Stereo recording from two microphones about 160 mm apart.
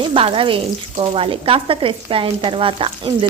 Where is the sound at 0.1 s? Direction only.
35° right (ahead or behind).